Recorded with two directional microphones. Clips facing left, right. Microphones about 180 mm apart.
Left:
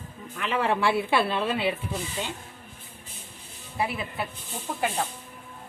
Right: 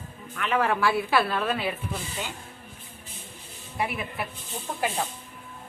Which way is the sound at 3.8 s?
30° left (ahead or behind).